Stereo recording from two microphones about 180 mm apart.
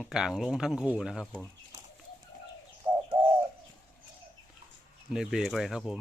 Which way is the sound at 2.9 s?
25° right (ahead or behind).